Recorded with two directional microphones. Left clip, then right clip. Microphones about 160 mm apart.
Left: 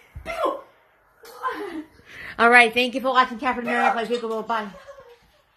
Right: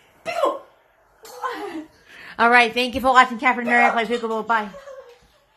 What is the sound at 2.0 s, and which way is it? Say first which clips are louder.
Speech: even; 10° left (ahead or behind).